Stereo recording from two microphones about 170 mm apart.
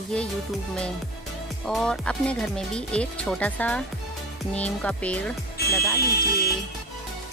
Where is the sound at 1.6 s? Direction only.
5° left (ahead or behind).